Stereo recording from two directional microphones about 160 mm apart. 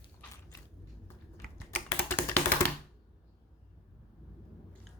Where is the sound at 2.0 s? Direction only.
10° left (ahead or behind).